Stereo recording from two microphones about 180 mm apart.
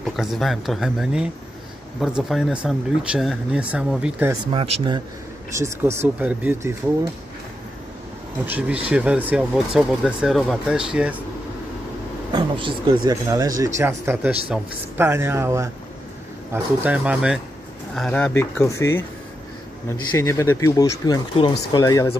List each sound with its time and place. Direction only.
0.0 s speech: centre (ahead or behind)
4.3 s speech: 25° right (ahead or behind)
5.6 s speech: 15° right (ahead or behind)
8.5 s speech: 5° right (ahead or behind)
12.3 s speech: 25° right (ahead or behind); by 19.0 s 15° left (ahead or behind)
20.1 s speech: 15° left (ahead or behind)